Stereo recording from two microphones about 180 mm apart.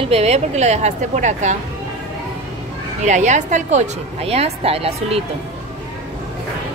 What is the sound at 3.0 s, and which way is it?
A woman's voice, 40° right (ahead or behind).